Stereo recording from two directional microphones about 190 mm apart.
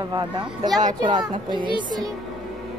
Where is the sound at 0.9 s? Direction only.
20° right (ahead or behind).